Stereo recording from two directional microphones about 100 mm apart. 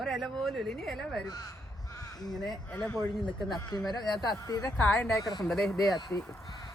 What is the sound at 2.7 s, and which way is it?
Speech, 20° left (ahead or behind).